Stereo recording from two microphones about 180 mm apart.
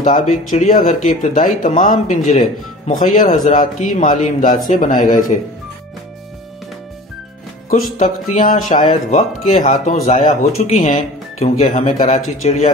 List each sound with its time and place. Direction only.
0.0 s speech: 45° left (ahead or behind)
7.7 s speech: 45° left (ahead or behind)